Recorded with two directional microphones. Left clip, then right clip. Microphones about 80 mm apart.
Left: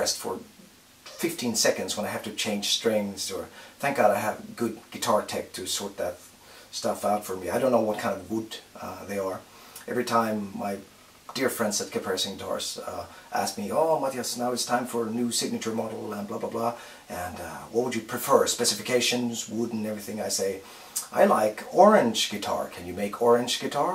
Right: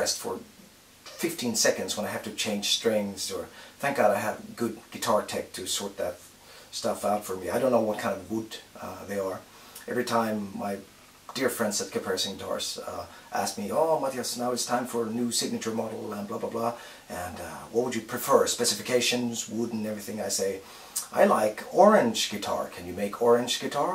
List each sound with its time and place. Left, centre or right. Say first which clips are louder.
0.3 s speech: left 1 dB; centre
1.2 s speech: left 1 dB; centre
15.0 s speech: left 1 dB; centre
15.2 s speech: left 1 dB; centre